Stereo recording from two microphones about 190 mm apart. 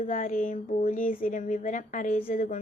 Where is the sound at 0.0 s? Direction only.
45° left (ahead or behind).